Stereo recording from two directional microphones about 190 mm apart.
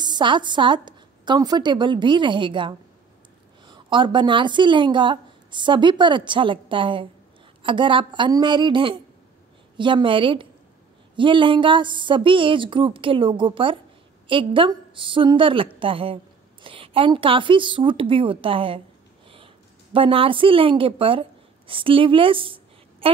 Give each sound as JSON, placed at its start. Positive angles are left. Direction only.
{"t": 0.0, "sound": "a woman's voice", "side_deg": -25}